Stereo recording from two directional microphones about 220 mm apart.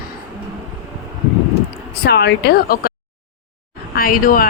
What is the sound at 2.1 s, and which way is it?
Speech, 50° left (ahead or behind).